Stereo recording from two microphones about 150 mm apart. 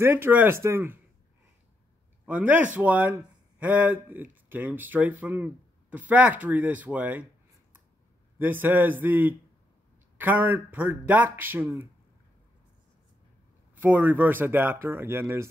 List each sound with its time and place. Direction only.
0.0 s speech: 15° right (ahead or behind)
2.2 s speech: 10° right (ahead or behind)
8.4 s speech: 10° right (ahead or behind)
13.7 s speech: 10° right (ahead or behind)